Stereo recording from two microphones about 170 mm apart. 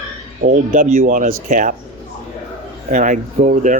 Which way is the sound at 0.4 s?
55° right (ahead or behind).